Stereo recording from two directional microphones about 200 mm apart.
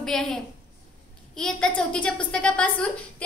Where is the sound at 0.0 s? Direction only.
5° left (ahead or behind).